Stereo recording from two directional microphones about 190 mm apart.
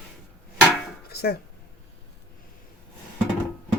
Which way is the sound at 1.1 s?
55° left (ahead or behind).